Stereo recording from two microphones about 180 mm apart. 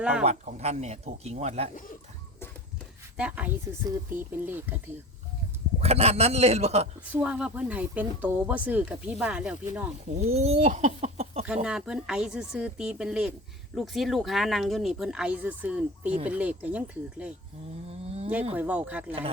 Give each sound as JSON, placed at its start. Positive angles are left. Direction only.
{"t": 0.0, "sound": "speech", "side_deg": -5}
{"t": 0.3, "sound": "speech", "side_deg": -40}
{"t": 1.7, "sound": "speech", "side_deg": 50}
{"t": 3.2, "sound": "speech", "side_deg": -5}
{"t": 5.8, "sound": "speech", "side_deg": -35}
{"t": 7.0, "sound": "speech", "side_deg": -10}
{"t": 10.2, "sound": "speech", "side_deg": -35}
{"t": 11.4, "sound": "speech", "side_deg": -5}
{"t": 18.5, "sound": "speech", "side_deg": -5}